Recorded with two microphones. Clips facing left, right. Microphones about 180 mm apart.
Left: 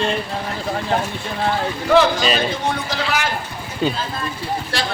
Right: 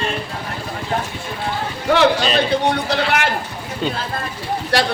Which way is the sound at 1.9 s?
65° right (ahead or behind).